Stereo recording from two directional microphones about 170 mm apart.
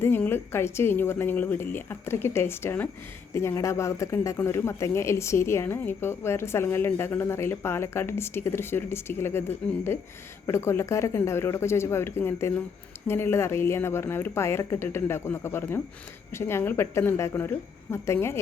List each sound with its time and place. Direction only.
0.0 s speech: 15° left (ahead or behind)